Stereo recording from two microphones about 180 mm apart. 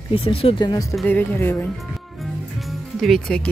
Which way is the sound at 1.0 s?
10° left (ahead or behind).